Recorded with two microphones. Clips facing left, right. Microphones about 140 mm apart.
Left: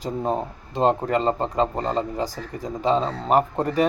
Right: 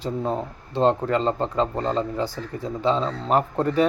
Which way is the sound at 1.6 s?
40° left (ahead or behind).